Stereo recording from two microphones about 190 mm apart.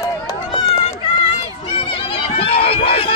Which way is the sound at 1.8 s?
30° left (ahead or behind).